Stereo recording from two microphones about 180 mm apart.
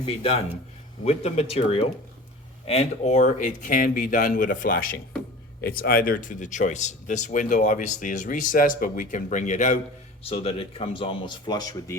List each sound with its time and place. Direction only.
0.0 s speech: 30° left (ahead or behind)